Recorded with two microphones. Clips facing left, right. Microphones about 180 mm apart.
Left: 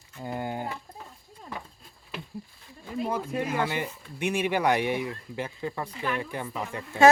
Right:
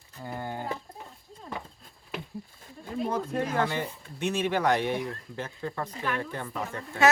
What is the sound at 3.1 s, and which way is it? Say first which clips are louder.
Speech: even; 10° left (ahead or behind).